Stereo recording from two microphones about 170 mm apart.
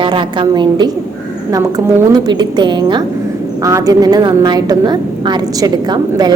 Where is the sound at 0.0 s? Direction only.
30° right (ahead or behind).